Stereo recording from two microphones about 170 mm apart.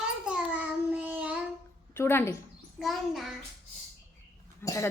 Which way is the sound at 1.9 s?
15° left (ahead or behind).